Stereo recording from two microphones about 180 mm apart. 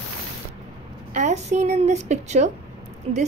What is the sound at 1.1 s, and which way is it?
A woman's voice, 40° right (ahead or behind).